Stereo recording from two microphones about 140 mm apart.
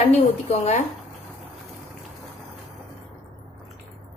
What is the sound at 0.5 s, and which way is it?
Speech, 55° left (ahead or behind).